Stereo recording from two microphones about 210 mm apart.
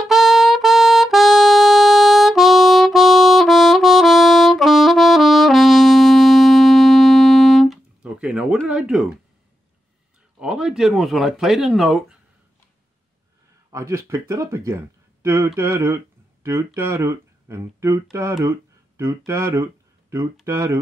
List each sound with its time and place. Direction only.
0.0 s music: centre (ahead or behind)
10.4 s speech: 5° right (ahead or behind)
13.7 s speech: 15° right (ahead or behind)